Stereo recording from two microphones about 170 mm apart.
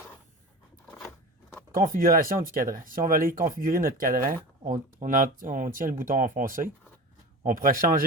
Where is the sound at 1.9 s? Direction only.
55° right (ahead or behind).